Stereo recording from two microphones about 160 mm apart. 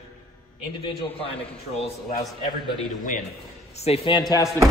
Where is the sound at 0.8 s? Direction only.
35° left (ahead or behind).